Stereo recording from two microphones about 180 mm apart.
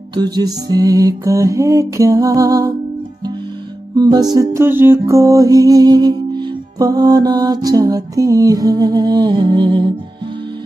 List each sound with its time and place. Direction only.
0.1 s music: 20° right (ahead or behind)
3.9 s music: 20° right (ahead or behind)